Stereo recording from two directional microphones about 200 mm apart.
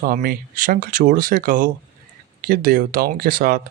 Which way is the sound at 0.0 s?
45° right (ahead or behind).